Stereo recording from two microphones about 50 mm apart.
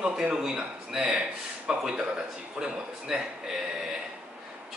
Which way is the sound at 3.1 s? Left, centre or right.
Centre.